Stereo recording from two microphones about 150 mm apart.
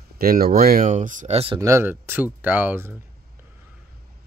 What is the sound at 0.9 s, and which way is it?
Speech, 60° right (ahead or behind).